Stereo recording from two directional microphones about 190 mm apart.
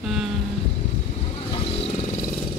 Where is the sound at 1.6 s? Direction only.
30° left (ahead or behind).